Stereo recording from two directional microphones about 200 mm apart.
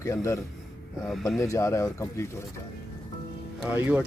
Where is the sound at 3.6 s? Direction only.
10° right (ahead or behind).